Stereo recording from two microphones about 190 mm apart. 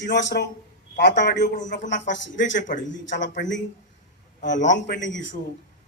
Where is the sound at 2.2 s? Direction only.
70° left (ahead or behind).